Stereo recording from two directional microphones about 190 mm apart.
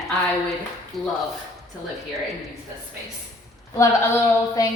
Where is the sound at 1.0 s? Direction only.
Centre (ahead or behind).